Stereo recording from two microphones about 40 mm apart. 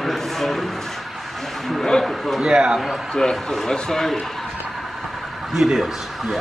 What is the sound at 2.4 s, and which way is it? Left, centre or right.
Speech, centre.